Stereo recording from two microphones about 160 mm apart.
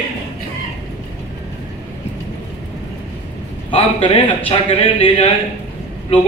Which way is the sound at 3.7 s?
40° left (ahead or behind).